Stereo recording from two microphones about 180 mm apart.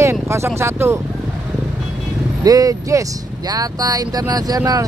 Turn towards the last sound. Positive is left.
turn(degrees=-20)  # may be behind; listen again after turning